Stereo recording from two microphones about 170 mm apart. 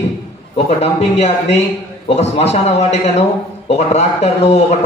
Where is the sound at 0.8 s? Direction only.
40° left (ahead or behind).